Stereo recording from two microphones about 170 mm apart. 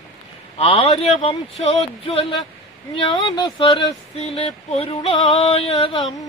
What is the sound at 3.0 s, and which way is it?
Speech, 25° left (ahead or behind).